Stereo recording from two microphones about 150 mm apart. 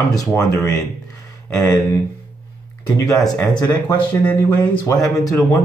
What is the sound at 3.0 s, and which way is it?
Speech, 25° left (ahead or behind).